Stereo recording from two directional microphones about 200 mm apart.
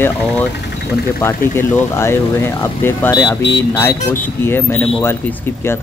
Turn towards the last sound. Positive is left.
turn(degrees=10)  # may be behind; listen again after turning